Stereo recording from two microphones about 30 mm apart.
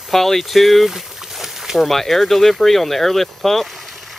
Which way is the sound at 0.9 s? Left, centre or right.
Centre.